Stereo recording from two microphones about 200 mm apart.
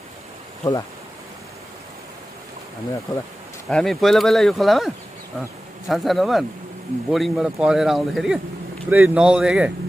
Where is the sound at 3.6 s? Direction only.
Centre (ahead or behind).